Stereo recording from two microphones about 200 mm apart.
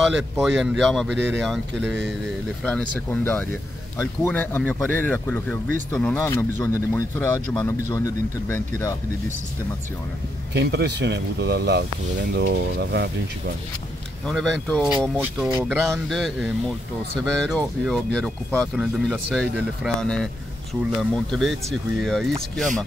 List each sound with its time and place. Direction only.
0.0 s speech: 5° right (ahead or behind)
1.9 s speech: 60° right (ahead or behind)
2.6 s speech: 5° left (ahead or behind)
10.5 s speech: 60° right (ahead or behind)
14.2 s speech: centre (ahead or behind)